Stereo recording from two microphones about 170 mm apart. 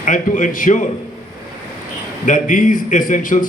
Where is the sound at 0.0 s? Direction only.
50° left (ahead or behind).